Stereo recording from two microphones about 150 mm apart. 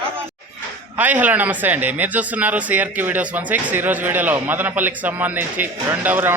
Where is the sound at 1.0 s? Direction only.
10° right (ahead or behind).